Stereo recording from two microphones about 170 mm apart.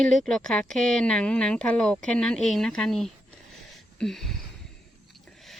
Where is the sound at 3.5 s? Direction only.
Centre (ahead or behind).